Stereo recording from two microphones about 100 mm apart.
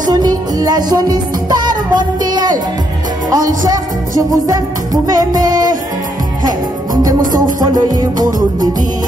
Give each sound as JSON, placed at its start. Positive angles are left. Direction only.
{"t": 0.1, "sound": "music", "side_deg": -40}